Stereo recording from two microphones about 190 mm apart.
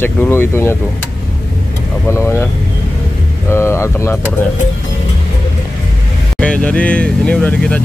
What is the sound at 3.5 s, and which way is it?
Speech, 15° left (ahead or behind).